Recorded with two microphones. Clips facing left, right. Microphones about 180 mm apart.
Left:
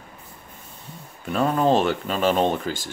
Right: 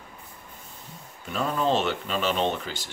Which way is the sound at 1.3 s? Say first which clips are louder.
Left 5 dB; 50° left (ahead or behind).